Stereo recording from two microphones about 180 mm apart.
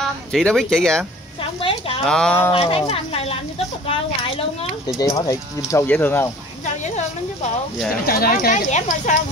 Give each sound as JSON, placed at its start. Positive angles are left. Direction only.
{"t": 0.0, "sound": "speech", "side_deg": 5}
{"t": 1.6, "sound": "a sound", "side_deg": 30}
{"t": 2.0, "sound": "speech", "side_deg": 5}
{"t": 2.5, "sound": "speech", "side_deg": 30}
{"t": 4.9, "sound": "speech", "side_deg": 15}
{"t": 6.6, "sound": "a sound", "side_deg": 40}
{"t": 8.0, "sound": "speech", "side_deg": 55}
{"t": 8.6, "sound": "speech", "side_deg": 40}